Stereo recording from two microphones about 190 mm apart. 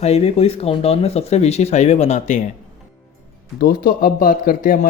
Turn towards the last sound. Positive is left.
turn(degrees=45)  # may be behind; listen again after turning